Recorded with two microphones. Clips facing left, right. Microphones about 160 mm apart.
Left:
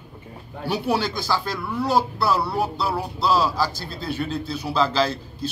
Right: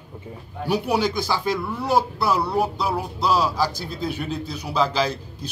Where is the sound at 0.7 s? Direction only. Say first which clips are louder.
Right 2 dB; 15° right (ahead or behind).